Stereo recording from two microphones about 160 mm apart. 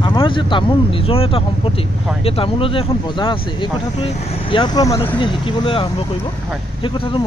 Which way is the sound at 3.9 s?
40° left (ahead or behind).